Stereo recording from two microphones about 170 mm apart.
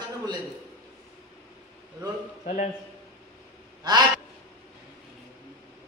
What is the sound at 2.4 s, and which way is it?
Speech, 45° left (ahead or behind).